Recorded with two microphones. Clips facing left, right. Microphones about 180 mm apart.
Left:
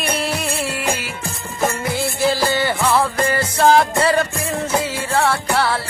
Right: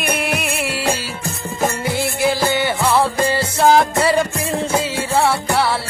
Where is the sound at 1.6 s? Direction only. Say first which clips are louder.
Right 1 dB; 25° right (ahead or behind).